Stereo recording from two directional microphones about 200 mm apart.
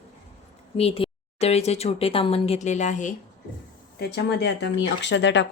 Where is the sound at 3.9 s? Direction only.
55° left (ahead or behind).